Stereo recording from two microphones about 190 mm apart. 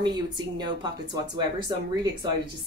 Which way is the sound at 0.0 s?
25° right (ahead or behind).